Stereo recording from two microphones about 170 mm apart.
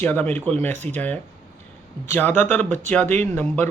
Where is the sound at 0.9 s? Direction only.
10° left (ahead or behind).